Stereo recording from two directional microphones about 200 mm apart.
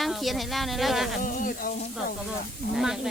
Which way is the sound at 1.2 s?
40° left (ahead or behind).